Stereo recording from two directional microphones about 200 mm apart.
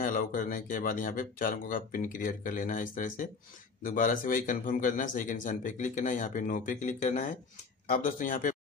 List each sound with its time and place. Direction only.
0.0 s a man's voice: 45° left (ahead or behind)